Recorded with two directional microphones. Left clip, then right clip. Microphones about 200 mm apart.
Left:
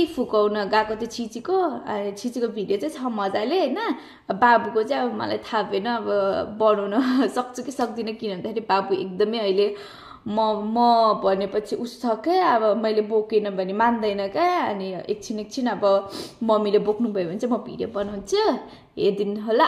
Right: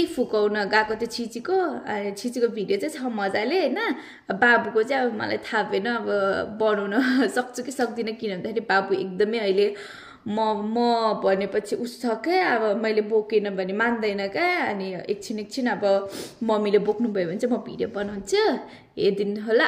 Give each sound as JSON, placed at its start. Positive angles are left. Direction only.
{"t": 0.2, "sound": "a woman's voice", "side_deg": 5}